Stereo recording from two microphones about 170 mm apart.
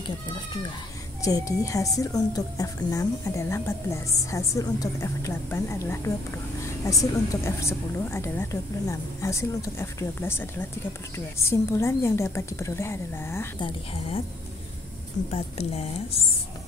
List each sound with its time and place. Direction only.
1.2 s a woman's voice: 20° left (ahead or behind)
13.6 s a woman's voice: 30° left (ahead or behind)
15.3 s a woman's voice: 40° left (ahead or behind)